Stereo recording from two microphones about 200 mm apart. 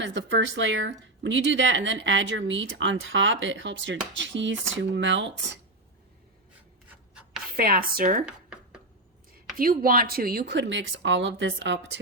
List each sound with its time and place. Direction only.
0.0 s speech: 65° right (ahead or behind)
6.9 s rub: 5° right (ahead or behind)
7.5 s speech: 50° right (ahead or behind)
8.2 s a sound: 5° right (ahead or behind)
9.6 s speech: 45° right (ahead or behind); by 11.8 s 65° right (ahead or behind)